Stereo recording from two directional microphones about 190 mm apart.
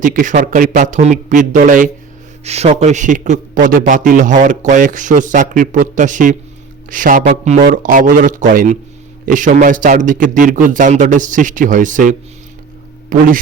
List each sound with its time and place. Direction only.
0.0 s a man's voice: 45° right (ahead or behind)